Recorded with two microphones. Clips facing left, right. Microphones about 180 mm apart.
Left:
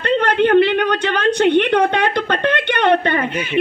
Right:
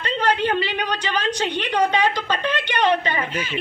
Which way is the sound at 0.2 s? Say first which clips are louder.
Left 7 dB; 60° left (ahead or behind).